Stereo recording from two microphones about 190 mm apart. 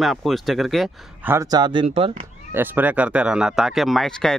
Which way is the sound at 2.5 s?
10° right (ahead or behind).